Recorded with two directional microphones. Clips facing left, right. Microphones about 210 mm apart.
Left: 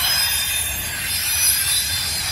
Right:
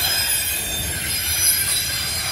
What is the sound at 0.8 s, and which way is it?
Train, 50° right (ahead or behind).